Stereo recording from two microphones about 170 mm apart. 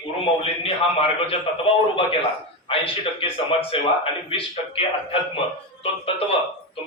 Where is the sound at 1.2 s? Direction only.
35° left (ahead or behind).